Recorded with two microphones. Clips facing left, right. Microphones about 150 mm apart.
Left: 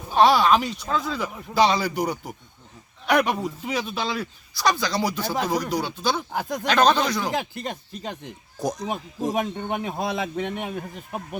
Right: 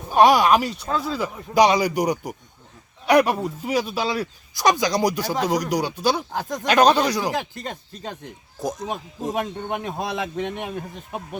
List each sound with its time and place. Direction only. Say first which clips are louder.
0.0 s speech: right 2 dB; 10° right (ahead or behind)
1.5 s speech: right 3 dB; 15° right (ahead or behind)
3.2 s speech: right 5 dB; 5° right (ahead or behind)
6.3 s speech: even; 15° left (ahead or behind)
6.6 s speech: right 3 dB; 10° right (ahead or behind)
7.6 s speech: left 1 dB; 15° left (ahead or behind)
8.5 s speech: left 1 dB; centre (ahead or behind)
9.3 s speech: right 1 dB; 10° left (ahead or behind)